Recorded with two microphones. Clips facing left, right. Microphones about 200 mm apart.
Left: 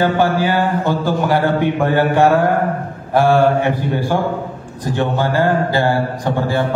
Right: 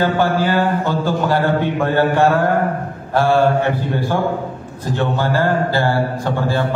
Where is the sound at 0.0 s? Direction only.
15° left (ahead or behind).